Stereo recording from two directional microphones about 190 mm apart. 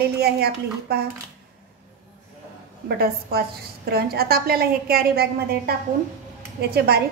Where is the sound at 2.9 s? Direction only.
55° right (ahead or behind).